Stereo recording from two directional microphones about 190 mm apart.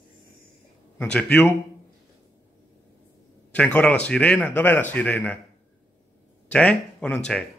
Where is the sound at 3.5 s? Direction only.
5° left (ahead or behind).